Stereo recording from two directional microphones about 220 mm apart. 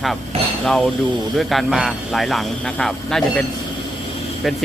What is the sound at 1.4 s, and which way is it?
Speech, centre (ahead or behind).